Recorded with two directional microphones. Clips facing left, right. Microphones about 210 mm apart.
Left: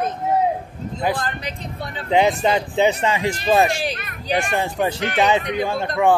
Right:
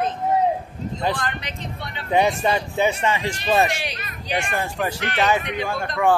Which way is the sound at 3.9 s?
55° left (ahead or behind).